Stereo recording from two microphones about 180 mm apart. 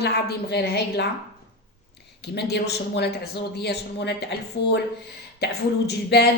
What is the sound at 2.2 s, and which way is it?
A woman's voice, 65° left (ahead or behind).